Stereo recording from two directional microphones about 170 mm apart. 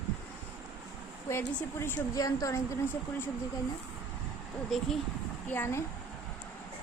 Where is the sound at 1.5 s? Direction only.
15° left (ahead or behind).